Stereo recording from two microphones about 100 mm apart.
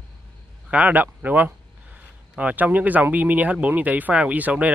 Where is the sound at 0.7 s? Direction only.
15° right (ahead or behind).